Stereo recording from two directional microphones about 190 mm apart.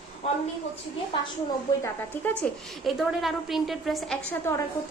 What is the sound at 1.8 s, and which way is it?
Speech, 10° left (ahead or behind).